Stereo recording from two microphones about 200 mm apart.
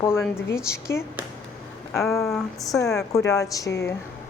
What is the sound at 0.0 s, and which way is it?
Speech, 10° left (ahead or behind).